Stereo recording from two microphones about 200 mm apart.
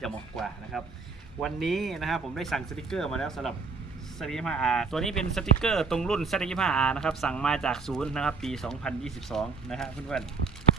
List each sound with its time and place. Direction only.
0.0 s speech: centre (ahead or behind)